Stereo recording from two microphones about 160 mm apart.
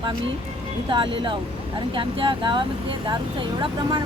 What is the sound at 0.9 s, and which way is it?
Speech, 30° right (ahead or behind).